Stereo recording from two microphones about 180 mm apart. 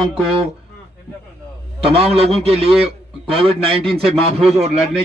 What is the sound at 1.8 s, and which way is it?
A man's voice, 35° right (ahead or behind).